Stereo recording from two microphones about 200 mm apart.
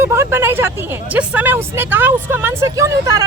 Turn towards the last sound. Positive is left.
turn(degrees=-15)  # may be behind; listen again after turning